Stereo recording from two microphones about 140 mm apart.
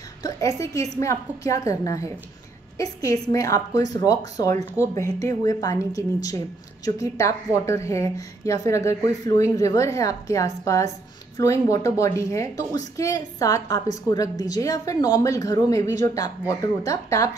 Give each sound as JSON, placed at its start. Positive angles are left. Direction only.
{"t": 0.2, "sound": "a woman's voice", "side_deg": 25}